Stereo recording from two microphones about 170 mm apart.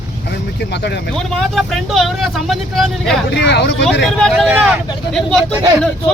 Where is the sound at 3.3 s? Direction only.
90° left.